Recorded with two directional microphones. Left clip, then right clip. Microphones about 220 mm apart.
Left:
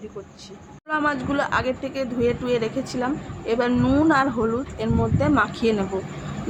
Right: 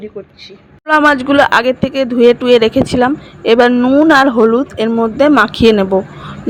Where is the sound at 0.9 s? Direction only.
40° right (ahead or behind).